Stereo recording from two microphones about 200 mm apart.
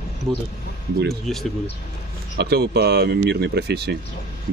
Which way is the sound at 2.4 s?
55° right (ahead or behind).